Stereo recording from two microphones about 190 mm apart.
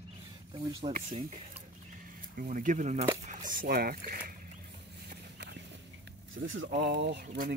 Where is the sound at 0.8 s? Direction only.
35° right (ahead or behind).